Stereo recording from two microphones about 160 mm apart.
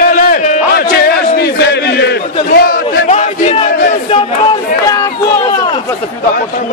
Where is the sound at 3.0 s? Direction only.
45° left (ahead or behind).